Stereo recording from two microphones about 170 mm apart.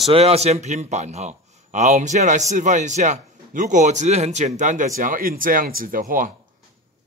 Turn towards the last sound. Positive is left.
turn(degrees=-55)  # may be behind; listen again after turning